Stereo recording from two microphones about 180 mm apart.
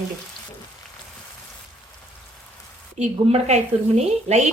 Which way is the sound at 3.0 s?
40° right (ahead or behind).